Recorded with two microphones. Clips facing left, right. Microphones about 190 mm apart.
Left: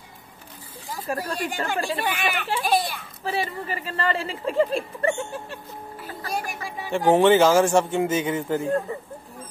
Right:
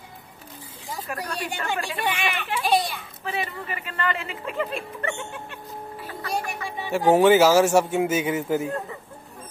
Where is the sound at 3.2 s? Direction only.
35° left (ahead or behind).